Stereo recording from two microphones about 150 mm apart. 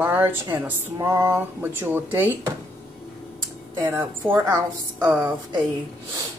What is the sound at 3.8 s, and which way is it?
A woman's voice, 15° right (ahead or behind).